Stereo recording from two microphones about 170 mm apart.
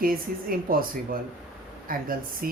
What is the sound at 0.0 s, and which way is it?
Speech, 60° right (ahead or behind).